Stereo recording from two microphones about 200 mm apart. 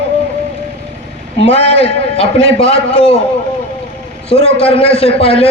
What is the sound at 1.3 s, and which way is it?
A man's voice, 30° left (ahead or behind).